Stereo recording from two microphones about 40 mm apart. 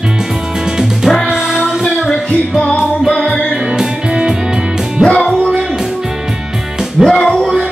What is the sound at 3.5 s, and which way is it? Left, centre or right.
Music, centre.